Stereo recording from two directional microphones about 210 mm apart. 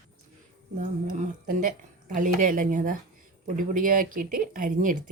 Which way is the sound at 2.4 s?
40° right (ahead or behind).